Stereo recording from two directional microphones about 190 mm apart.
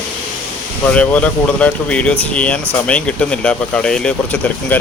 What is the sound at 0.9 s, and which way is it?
Speech, 5° left (ahead or behind).